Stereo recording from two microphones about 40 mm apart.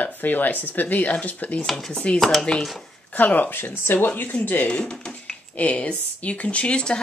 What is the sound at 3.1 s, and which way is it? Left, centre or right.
Speech, left.